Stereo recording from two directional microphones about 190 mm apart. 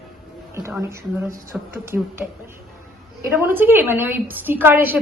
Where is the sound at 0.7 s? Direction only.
10° right (ahead or behind).